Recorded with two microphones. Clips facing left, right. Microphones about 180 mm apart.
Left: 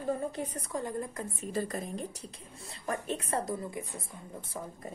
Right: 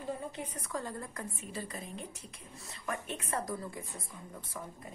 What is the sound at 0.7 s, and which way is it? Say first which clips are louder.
Speech: left 3 dB; 20° left (ahead or behind).